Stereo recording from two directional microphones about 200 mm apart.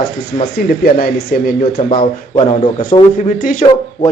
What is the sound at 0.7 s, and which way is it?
Speech, 50° left (ahead or behind).